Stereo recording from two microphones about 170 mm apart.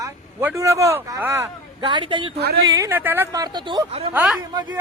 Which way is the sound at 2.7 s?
15° right (ahead or behind).